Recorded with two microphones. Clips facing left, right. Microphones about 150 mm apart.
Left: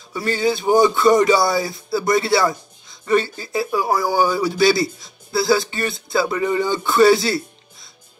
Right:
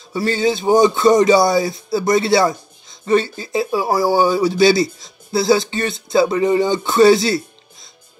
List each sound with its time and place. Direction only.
0.1 s speech: 25° right (ahead or behind)